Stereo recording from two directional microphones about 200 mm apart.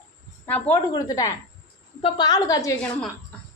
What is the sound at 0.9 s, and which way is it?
A woman's voice, 20° left (ahead or behind).